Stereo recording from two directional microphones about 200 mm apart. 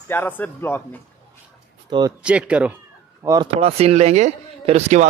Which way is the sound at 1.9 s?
20° right (ahead or behind).